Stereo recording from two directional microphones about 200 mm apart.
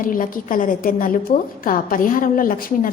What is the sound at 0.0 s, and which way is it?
A woman's voice, 45° left (ahead or behind).